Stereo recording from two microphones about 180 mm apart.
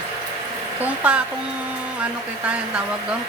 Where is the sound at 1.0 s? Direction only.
5° right (ahead or behind).